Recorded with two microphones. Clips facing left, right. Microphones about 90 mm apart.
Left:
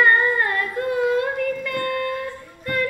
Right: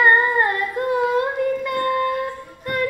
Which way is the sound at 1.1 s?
25° right (ahead or behind).